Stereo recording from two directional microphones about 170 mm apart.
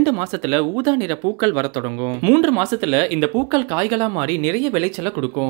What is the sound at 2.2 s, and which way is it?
Speech, 30° right (ahead or behind).